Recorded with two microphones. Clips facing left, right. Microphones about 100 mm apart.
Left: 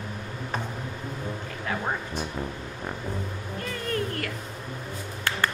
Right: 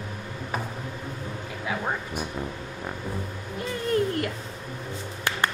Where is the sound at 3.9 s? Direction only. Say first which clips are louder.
Right 6 dB; 25° right (ahead or behind).